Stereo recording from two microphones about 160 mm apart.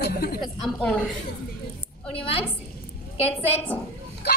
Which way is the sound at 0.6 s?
5° left (ahead or behind).